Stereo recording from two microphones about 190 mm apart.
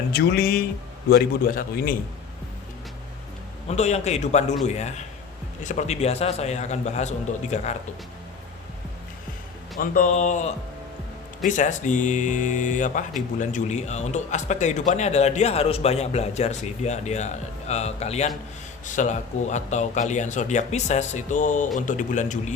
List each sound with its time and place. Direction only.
0.1 s a man's voice: 55° left (ahead or behind)
3.7 s speech: 35° left (ahead or behind)
9.7 s a man's voice: 45° left (ahead or behind)